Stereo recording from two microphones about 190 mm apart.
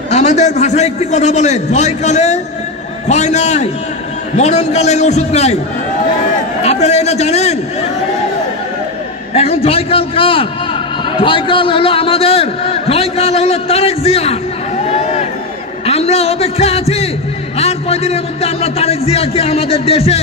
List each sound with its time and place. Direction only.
0.1 s a man's voice: 35° left (ahead or behind)
6.6 s a man's voice: 35° left (ahead or behind)
9.3 s a man's voice: 30° left (ahead or behind)
14.9 s a sound: 35° left (ahead or behind)
17.6 s a man's voice: 35° left (ahead or behind)